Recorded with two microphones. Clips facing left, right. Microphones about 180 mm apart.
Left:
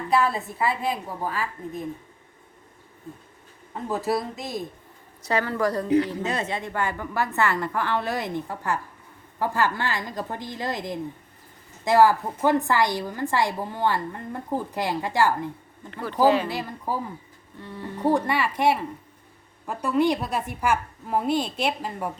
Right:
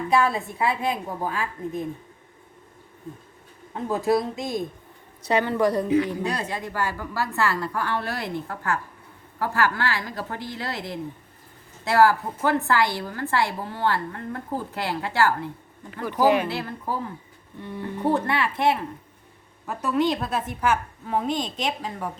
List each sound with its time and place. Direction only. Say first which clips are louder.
0.1 s a woman's voice: even; centre (ahead or behind)
3.8 s speech: right 3 dB; centre (ahead or behind)
5.3 s a woman's voice: right 3 dB; 20° right (ahead or behind)
6.2 s a woman's voice: even; 25° left (ahead or behind)
16.2 s speech: even; 15° right (ahead or behind)
16.5 s a woman's voice: even; 15° left (ahead or behind)
17.6 s speech: right 4 dB; 15° right (ahead or behind)
17.8 s a woman's voice: left 1 dB; 10° left (ahead or behind)